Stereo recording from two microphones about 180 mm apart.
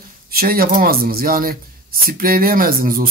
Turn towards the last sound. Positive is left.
turn(degrees=-50)  # may be behind; listen again after turning